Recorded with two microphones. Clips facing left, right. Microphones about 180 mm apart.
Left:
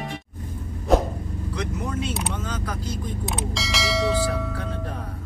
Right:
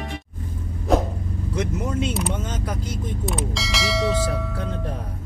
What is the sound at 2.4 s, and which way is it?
Speech, 20° right (ahead or behind).